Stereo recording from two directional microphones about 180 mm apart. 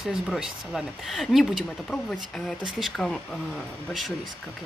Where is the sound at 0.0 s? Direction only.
Centre (ahead or behind).